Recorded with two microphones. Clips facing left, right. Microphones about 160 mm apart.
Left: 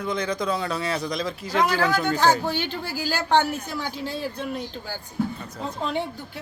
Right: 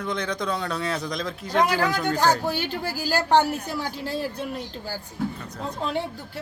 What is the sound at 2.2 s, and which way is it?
Speech, 10° right (ahead or behind).